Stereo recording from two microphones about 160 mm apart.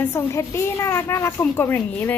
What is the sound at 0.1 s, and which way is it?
A child's voice, 15° left (ahead or behind).